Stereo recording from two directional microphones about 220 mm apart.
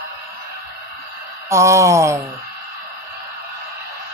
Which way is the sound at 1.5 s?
15° right (ahead or behind).